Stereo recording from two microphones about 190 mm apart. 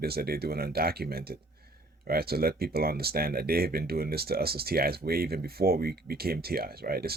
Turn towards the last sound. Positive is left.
turn(degrees=-55)  # may be behind; listen again after turning